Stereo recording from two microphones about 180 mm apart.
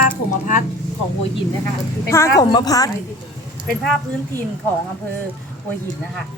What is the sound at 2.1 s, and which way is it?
Speech, 15° left (ahead or behind).